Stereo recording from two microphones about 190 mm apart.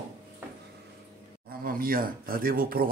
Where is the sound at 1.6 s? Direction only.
50° right (ahead or behind).